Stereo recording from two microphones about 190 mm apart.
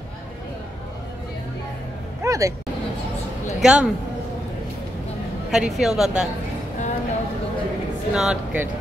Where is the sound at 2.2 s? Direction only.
15° right (ahead or behind).